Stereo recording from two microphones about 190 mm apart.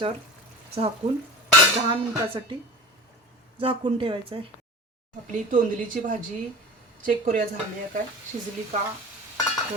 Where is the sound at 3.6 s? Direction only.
30° right (ahead or behind).